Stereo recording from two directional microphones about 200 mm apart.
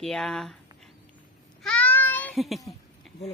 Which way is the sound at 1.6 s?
5° left (ahead or behind).